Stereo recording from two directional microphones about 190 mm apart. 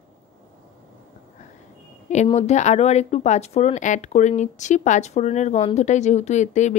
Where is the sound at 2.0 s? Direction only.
35° left (ahead or behind).